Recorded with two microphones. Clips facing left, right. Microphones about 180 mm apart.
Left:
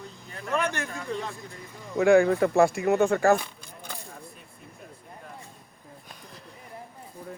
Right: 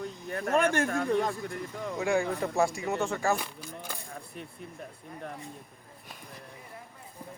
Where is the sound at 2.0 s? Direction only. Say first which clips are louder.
Left 10 dB; 65° left (ahead or behind).